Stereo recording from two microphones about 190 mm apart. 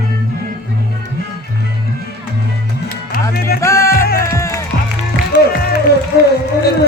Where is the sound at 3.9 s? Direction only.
50° left (ahead or behind).